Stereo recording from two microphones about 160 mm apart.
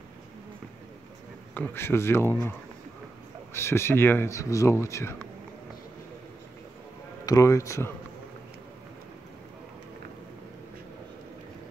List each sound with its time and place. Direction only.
1.5 s speech: 10° left (ahead or behind)
3.5 s speech: 15° left (ahead or behind)
7.2 s speech: 20° left (ahead or behind)